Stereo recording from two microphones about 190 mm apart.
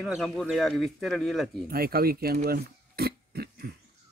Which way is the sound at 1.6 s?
50° right (ahead or behind).